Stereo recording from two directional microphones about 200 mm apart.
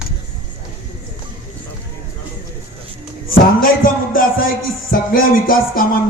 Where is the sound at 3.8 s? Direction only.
45° left (ahead or behind).